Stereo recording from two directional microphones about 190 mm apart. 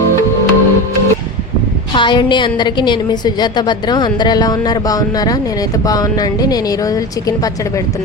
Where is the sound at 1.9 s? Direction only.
25° left (ahead or behind).